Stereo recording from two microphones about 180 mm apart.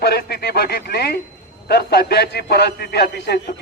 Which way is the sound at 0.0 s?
65° left (ahead or behind).